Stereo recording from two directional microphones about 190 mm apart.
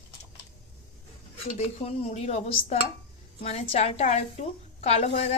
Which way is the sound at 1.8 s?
35° left (ahead or behind).